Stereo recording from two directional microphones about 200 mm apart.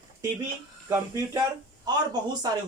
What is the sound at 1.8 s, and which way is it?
Speech, 20° right (ahead or behind).